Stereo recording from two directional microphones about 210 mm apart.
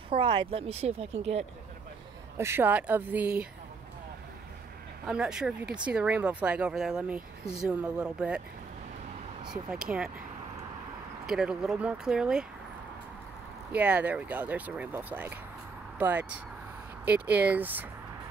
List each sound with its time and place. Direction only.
0.1 s speech: 25° right (ahead or behind)
2.3 s speech: 10° right (ahead or behind)
5.0 s speech: 5° right (ahead or behind)
9.8 s speech: 5° right (ahead or behind)
11.2 s speech: 5° right (ahead or behind)
13.7 s speech: 5° right (ahead or behind)